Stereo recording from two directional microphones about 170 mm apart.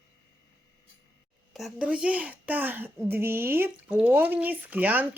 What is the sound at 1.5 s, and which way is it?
Speech, centre (ahead or behind).